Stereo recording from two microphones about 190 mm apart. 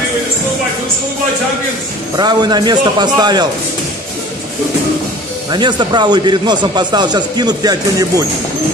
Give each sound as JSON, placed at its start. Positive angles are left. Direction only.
{"t": 2.1, "sound": "a man's voice", "side_deg": -20}
{"t": 5.5, "sound": "a man's voice", "side_deg": -25}